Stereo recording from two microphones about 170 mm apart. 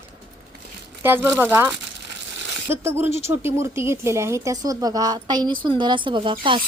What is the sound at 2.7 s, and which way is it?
Speech, 15° right (ahead or behind).